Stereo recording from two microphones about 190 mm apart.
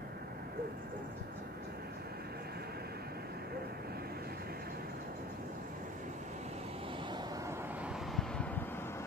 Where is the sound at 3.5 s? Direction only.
55° right (ahead or behind).